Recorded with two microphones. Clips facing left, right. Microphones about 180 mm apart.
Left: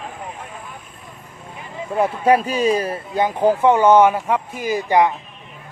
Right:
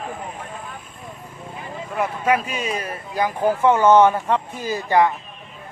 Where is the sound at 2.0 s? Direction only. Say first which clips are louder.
Left 5 dB; 35° left (ahead or behind); by 5.1 s 15° left (ahead or behind).